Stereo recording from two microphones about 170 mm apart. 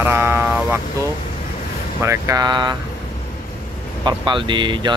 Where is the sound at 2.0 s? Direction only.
20° right (ahead or behind).